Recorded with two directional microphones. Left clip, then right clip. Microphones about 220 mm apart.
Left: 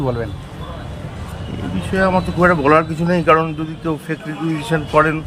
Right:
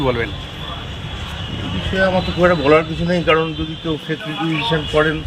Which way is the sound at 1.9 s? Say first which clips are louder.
Even; 15° left (ahead or behind).